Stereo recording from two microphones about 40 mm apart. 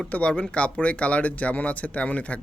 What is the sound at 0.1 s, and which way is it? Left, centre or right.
Speech, left.